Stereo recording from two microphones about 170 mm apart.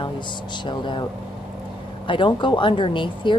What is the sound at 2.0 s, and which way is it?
Speech, 30° left (ahead or behind).